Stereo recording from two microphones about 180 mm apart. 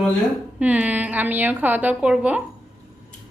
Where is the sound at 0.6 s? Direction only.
10° right (ahead or behind).